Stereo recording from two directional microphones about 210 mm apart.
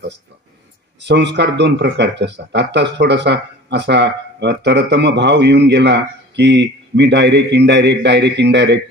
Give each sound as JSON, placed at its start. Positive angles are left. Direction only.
{"t": 1.0, "sound": "speech", "side_deg": -55}